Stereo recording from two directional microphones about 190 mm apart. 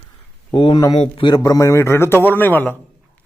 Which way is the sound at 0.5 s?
25° left (ahead or behind).